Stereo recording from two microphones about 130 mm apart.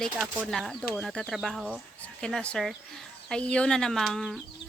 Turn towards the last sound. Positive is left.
turn(degrees=5)  # may be behind; listen again after turning